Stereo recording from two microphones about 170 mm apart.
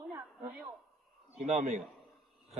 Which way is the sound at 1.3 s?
40° right (ahead or behind).